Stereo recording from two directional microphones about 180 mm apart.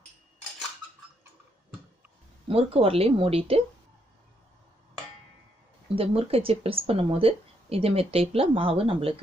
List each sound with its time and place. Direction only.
2.5 s speech: 30° right (ahead or behind)
6.0 s speech: 30° right (ahead or behind)